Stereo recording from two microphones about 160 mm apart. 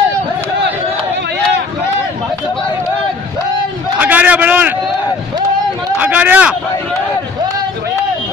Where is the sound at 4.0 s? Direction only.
10° right (ahead or behind).